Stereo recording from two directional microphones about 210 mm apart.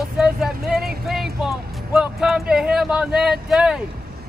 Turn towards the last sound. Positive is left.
turn(degrees=0)  # may be behind; listen again after turning